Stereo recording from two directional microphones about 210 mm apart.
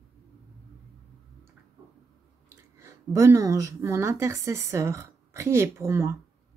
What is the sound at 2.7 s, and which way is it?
A woman's voice, 15° right (ahead or behind).